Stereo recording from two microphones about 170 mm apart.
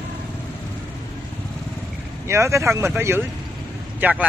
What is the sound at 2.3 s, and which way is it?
Speech, 15° right (ahead or behind).